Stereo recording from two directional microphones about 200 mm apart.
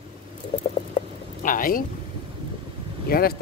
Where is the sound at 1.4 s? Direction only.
45° left (ahead or behind).